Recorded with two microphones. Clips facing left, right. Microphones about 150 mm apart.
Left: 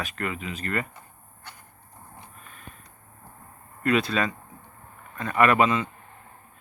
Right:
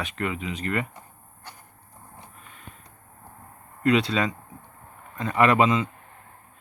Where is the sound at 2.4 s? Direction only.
20° right (ahead or behind).